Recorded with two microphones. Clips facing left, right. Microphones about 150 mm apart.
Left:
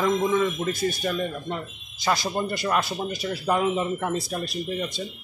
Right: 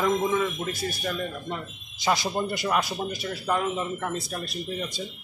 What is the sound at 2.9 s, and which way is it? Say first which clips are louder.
Speech: left 2 dB; centre (ahead or behind).